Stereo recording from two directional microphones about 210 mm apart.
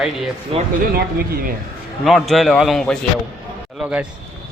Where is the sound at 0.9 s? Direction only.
45° right (ahead or behind).